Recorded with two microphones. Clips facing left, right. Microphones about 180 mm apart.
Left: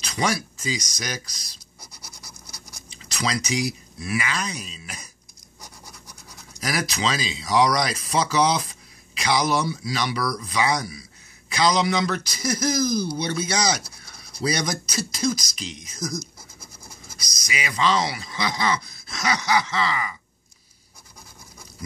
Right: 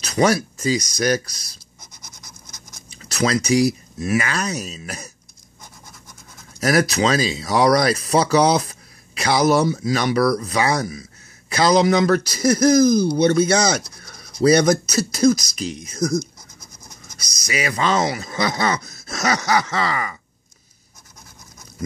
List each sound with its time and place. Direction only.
0.0 s speech: 50° right (ahead or behind)
3.0 s a sound: 45° right (ahead or behind)
4.0 s speech: 45° right (ahead or behind)
6.6 s speech: 50° right (ahead or behind)
17.5 s speech: 50° right (ahead or behind)